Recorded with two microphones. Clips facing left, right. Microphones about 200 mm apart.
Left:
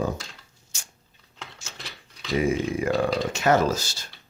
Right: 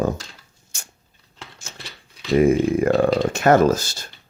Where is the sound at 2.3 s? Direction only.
55° right (ahead or behind).